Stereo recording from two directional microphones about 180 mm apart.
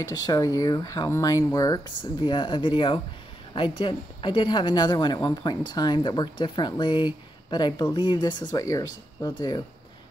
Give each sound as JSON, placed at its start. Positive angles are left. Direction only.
{"t": 0.0, "sound": "a woman's voice", "side_deg": 20}